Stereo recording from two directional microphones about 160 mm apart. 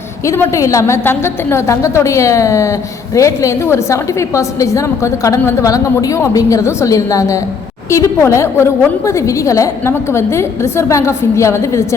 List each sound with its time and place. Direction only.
0.3 s a woman's voice: 20° left (ahead or behind)